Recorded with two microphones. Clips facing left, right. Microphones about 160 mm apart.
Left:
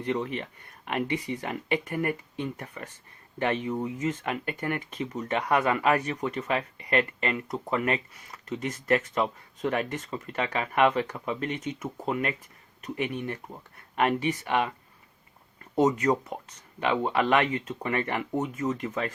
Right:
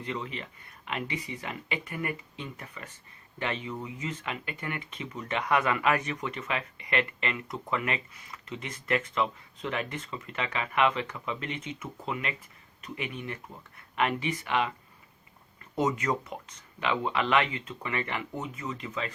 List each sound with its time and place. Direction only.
0.1 s speech: 50° left (ahead or behind)
15.7 s speech: 35° left (ahead or behind)